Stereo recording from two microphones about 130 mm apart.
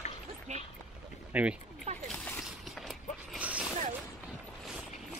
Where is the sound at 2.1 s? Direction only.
5° left (ahead or behind).